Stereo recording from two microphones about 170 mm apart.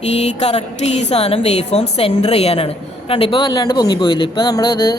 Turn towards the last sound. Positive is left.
turn(degrees=25)  # may be behind; listen again after turning